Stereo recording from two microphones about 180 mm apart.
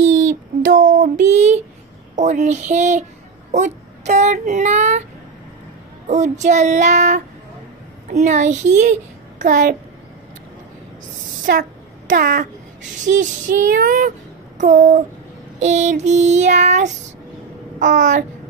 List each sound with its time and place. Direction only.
0.3 s child singing: 50° right (ahead or behind)
6.0 s child singing: 40° right (ahead or behind)
12.1 s child singing: 50° right (ahead or behind)
17.7 s a sound: 45° right (ahead or behind)